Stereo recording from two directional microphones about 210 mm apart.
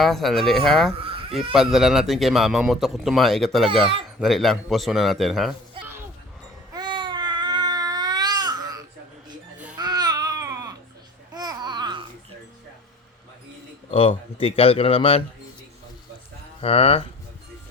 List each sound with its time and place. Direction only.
0.0 s a man's voice: centre (ahead or behind)
6.7 s babbling: 20° right (ahead or behind)
13.9 s speech: 25° left (ahead or behind)
16.6 s speech: 30° left (ahead or behind)